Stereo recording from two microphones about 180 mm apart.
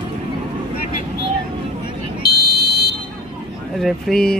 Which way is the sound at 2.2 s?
60° left (ahead or behind).